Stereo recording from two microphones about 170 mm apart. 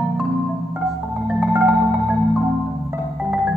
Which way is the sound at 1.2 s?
5° right (ahead or behind).